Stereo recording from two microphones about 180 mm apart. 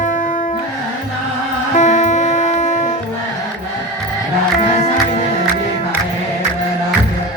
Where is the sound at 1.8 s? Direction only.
40° left (ahead or behind).